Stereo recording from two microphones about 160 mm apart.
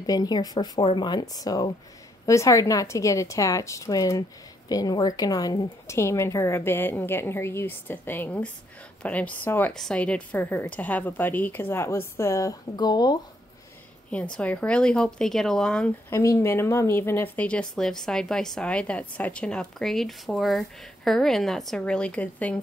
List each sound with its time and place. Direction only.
0.0 s a woman's voice: 25° left (ahead or behind)
14.3 s speech: 10° left (ahead or behind)
16.1 s speech: 15° left (ahead or behind)